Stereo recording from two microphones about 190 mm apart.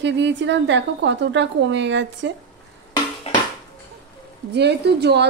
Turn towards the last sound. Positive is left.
turn(degrees=-60)  # may be behind; listen again after turning